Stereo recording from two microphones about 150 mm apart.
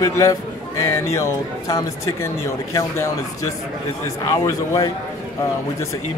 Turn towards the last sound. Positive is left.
turn(degrees=20)  # may be behind; listen again after turning